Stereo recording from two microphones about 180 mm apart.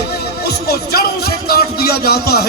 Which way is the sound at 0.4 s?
60° left (ahead or behind).